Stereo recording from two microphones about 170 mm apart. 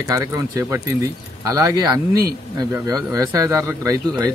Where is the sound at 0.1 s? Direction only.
20° right (ahead or behind).